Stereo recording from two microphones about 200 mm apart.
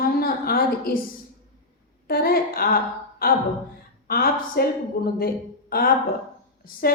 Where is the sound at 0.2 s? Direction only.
50° left (ahead or behind).